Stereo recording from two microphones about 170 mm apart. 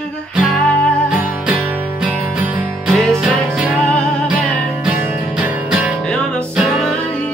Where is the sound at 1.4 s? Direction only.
5° right (ahead or behind).